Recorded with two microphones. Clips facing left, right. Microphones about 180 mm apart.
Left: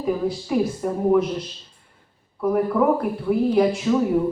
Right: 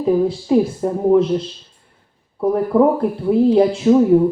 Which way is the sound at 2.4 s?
30° right (ahead or behind).